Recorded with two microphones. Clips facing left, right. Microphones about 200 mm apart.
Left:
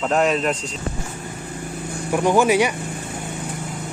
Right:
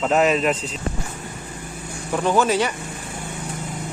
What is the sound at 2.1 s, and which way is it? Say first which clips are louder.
Speech: left 2 dB; 15° left (ahead or behind).